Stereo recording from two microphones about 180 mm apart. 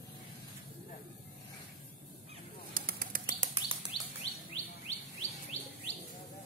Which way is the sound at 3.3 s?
30° right (ahead or behind).